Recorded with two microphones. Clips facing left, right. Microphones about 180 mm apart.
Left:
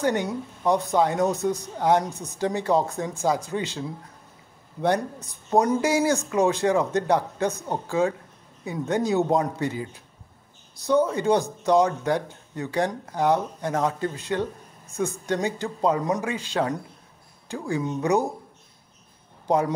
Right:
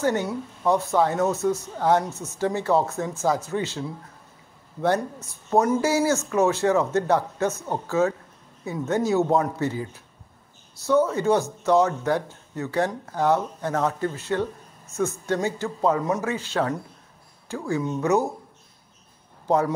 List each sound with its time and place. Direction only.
0.0 s speech: 15° left (ahead or behind)
4.8 s speech: 15° left (ahead or behind)
11.1 s speech: 15° left (ahead or behind)
19.4 s speech: 15° left (ahead or behind)